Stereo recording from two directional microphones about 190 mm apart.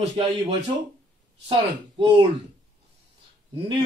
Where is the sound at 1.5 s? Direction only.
25° right (ahead or behind).